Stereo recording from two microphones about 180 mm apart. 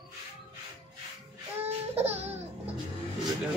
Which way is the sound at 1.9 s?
35° right (ahead or behind).